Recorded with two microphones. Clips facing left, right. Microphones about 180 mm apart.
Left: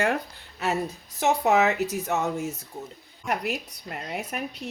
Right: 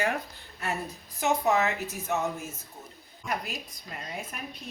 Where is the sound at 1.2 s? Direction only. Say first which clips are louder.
Left 4 dB; 75° left (ahead or behind).